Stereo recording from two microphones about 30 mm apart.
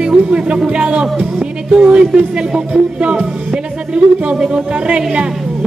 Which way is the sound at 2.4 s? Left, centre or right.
Right.